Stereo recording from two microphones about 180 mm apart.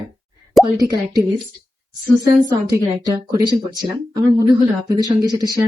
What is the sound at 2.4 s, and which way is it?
Speech, 20° right (ahead or behind).